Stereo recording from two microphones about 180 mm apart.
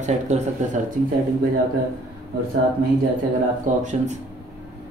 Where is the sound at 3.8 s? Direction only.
40° right (ahead or behind).